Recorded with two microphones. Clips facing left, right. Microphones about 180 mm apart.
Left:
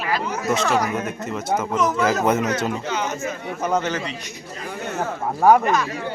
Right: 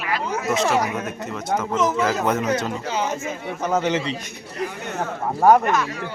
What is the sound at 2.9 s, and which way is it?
Speech, 30° right (ahead or behind).